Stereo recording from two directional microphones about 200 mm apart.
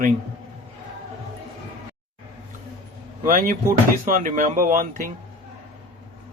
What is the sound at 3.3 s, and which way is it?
Speech, 40° right (ahead or behind).